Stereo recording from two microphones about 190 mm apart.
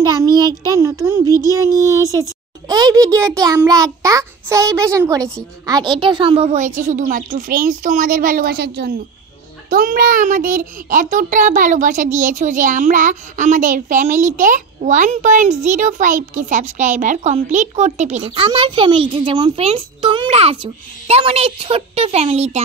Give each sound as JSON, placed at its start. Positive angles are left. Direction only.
{"t": 0.0, "sound": "a child's voice", "side_deg": -20}